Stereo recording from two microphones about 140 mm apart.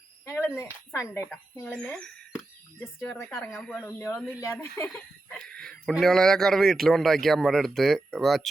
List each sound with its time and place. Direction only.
0.3 s speech: 15° left (ahead or behind)
2.7 s a woman's voice: 20° left (ahead or behind); by 3.8 s 5° left (ahead or behind)
3.8 s a woman's voice: 15° left (ahead or behind)
5.5 s a sound: 5° left (ahead or behind)
5.9 s a man's voice: centre (ahead or behind)